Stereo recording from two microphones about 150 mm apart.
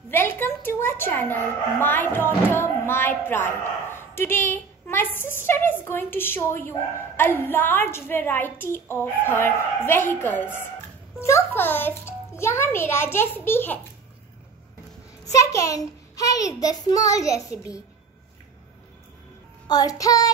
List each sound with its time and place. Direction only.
0.1 s a woman's voice: 15° left (ahead or behind)
15.3 s a child's voice: 20° left (ahead or behind)
19.7 s a child's voice: 25° left (ahead or behind)